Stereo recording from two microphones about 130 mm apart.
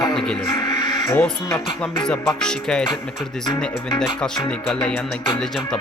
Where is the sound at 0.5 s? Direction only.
35° left (ahead or behind).